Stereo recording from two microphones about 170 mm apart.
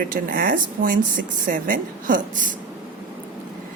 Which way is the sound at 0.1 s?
55° right (ahead or behind).